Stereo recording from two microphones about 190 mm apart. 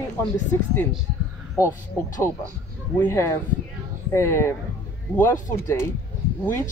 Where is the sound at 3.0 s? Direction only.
15° left (ahead or behind).